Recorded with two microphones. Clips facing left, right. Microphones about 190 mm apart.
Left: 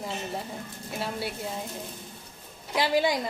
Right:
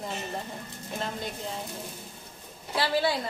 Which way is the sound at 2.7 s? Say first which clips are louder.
Left 2 dB; 15° left (ahead or behind).